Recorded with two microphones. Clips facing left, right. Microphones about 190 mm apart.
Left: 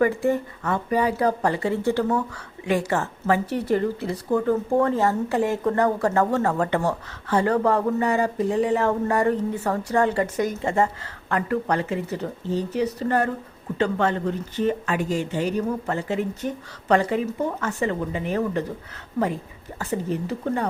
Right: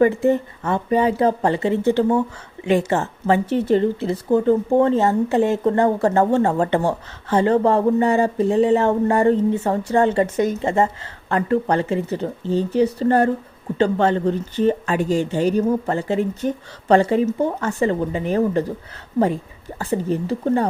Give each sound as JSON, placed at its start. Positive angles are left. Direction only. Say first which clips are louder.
{"t": 0.0, "sound": "speech", "louder": "right 5 dB", "side_deg": -25}
{"t": 19.8, "sound": "speech", "louder": "right 4 dB", "side_deg": -30}